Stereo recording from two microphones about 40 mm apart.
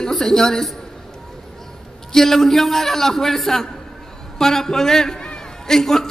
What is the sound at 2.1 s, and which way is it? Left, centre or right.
A man's voice, centre.